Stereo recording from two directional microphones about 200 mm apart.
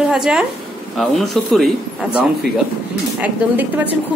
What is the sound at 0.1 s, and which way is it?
A woman's voice, 5° right (ahead or behind).